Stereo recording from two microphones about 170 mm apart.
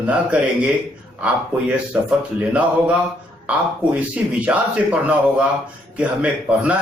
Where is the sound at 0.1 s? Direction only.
10° right (ahead or behind).